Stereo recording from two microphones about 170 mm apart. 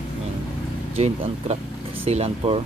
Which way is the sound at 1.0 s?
35° right (ahead or behind).